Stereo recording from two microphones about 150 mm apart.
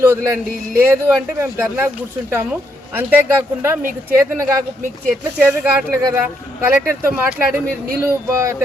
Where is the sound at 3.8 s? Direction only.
65° right (ahead or behind).